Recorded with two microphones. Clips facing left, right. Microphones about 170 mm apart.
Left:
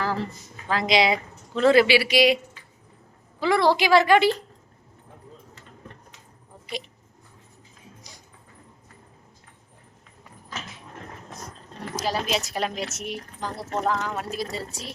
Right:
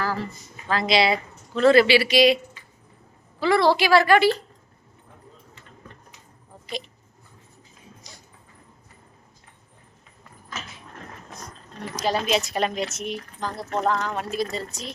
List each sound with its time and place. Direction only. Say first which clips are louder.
0.7 s speech: even; 15° left (ahead or behind)
3.4 s a woman's voice: right 1 dB; 15° left (ahead or behind)
8.1 s a sound: right 1 dB; 10° left (ahead or behind)
11.3 s speech: left 1 dB; centre (ahead or behind)